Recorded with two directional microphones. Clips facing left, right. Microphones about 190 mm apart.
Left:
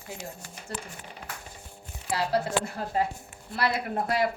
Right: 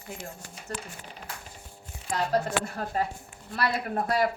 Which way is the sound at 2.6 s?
25° left (ahead or behind).